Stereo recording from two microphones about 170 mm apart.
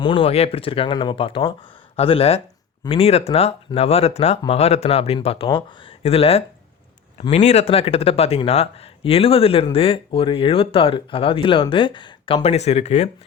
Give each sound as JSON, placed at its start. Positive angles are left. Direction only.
{"t": 0.0, "sound": "speech", "side_deg": 30}